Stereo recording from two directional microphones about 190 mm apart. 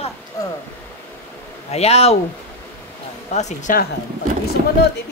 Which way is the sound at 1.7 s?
35° left (ahead or behind).